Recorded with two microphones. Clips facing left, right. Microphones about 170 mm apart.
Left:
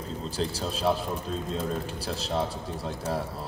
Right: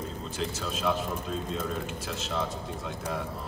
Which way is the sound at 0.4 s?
35° left (ahead or behind).